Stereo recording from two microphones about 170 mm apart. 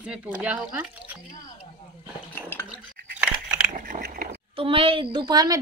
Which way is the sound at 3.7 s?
55° right (ahead or behind).